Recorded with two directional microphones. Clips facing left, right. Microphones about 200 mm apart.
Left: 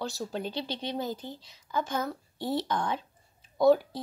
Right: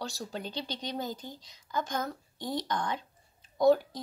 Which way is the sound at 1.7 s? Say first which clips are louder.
Left 2 dB; 5° left (ahead or behind).